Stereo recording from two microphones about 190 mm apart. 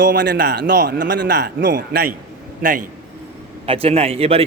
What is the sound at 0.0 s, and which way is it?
A man's voice, 60° right (ahead or behind).